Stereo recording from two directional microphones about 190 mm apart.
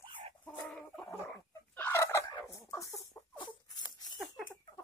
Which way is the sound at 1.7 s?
10° left (ahead or behind).